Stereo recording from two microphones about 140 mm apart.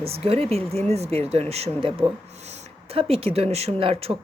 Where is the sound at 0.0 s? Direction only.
45° right (ahead or behind).